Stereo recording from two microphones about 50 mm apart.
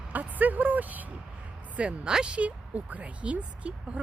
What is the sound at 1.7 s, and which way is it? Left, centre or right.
Speech, centre.